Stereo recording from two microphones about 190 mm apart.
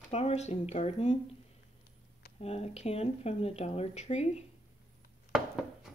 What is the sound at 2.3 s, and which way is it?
Speech, 30° left (ahead or behind).